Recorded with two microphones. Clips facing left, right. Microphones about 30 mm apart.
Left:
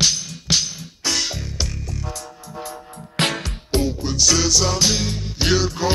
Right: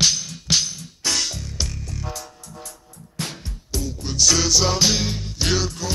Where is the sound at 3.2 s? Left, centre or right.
Left.